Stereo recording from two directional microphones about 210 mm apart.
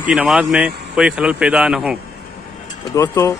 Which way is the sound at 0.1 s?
Centre (ahead or behind).